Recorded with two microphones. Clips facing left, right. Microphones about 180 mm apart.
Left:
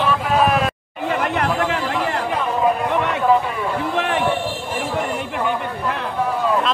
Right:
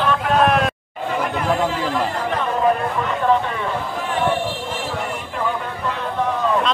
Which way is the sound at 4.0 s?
75° left (ahead or behind).